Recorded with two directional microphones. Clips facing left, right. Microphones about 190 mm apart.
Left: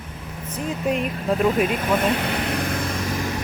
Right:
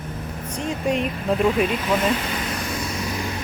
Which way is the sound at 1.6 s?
50° left (ahead or behind).